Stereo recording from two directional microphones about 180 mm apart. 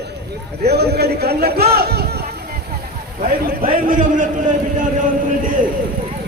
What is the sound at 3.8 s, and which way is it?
Speech, 50° right (ahead or behind).